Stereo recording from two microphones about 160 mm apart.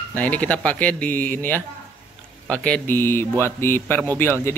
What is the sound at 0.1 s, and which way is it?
Speech, 10° left (ahead or behind).